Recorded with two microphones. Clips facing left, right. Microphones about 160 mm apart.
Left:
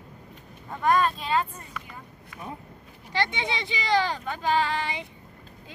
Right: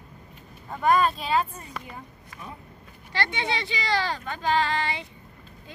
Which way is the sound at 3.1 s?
15° left (ahead or behind).